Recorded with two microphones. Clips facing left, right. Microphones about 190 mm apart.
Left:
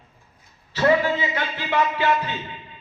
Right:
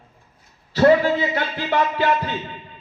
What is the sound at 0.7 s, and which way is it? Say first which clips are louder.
Speech: right 4 dB; 40° right (ahead or behind).